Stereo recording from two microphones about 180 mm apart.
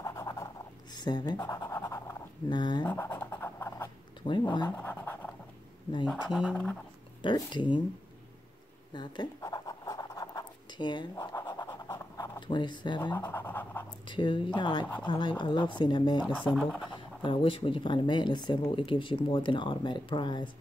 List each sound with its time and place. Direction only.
0.0 s scratch: 20° left (ahead or behind)
0.9 s speech: 25° left (ahead or behind)
1.4 s scratch: 15° left (ahead or behind)
2.8 s writing: 10° left (ahead or behind)
4.2 s speech: 25° left (ahead or behind)
4.6 s scratch: 10° left (ahead or behind)
6.0 s speech: centre (ahead or behind)
7.2 s speech: 25° left (ahead or behind)
8.9 s scratch: 25° left (ahead or behind)
13.1 s pant: 10° left (ahead or behind)
13.8 s speech: 25° left (ahead or behind)
16.3 s speech: centre (ahead or behind)
17.2 s speech: 30° left (ahead or behind)